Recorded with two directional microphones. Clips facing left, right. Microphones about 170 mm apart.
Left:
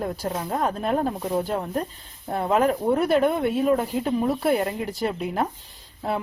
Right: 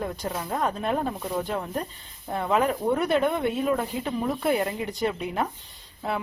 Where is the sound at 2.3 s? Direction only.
35° left (ahead or behind).